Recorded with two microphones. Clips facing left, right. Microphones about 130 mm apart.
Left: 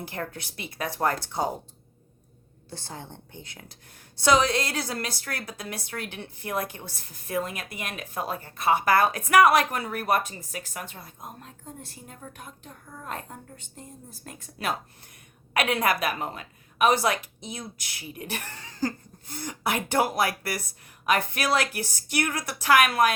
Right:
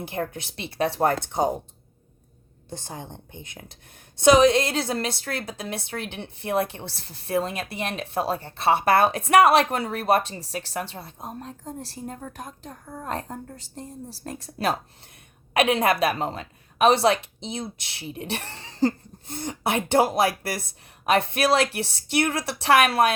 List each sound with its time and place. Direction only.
0.0 s a woman's voice: 20° right (ahead or behind)
2.6 s a woman's voice: 20° right (ahead or behind); by 14.8 s 35° right (ahead or behind)
15.5 s a woman's voice: 20° right (ahead or behind)